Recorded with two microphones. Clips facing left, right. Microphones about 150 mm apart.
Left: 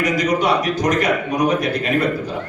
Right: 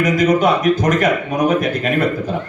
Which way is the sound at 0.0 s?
50° right (ahead or behind).